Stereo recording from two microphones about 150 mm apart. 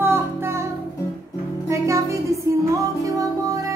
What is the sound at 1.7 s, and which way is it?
Music, 20° right (ahead or behind).